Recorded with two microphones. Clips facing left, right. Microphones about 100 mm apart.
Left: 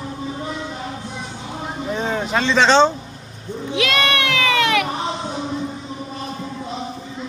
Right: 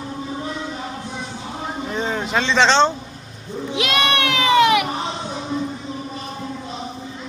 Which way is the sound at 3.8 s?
20° right (ahead or behind).